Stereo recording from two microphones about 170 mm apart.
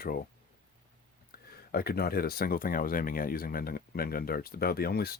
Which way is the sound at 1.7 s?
65° left (ahead or behind).